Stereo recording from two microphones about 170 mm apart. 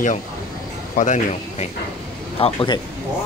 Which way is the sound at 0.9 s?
45° left (ahead or behind).